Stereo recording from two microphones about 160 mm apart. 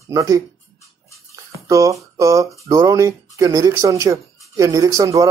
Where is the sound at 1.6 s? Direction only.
20° right (ahead or behind).